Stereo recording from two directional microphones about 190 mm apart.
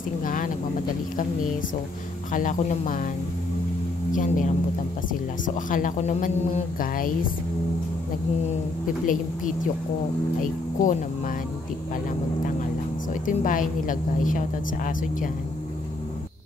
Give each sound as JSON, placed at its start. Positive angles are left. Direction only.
{"t": 0.2, "sound": "a woman's voice", "side_deg": 45}
{"t": 2.3, "sound": "a woman's voice", "side_deg": 45}
{"t": 4.1, "sound": "a woman's voice", "side_deg": 45}
{"t": 9.0, "sound": "a woman's voice", "side_deg": 45}
{"t": 13.1, "sound": "a woman's voice", "side_deg": 45}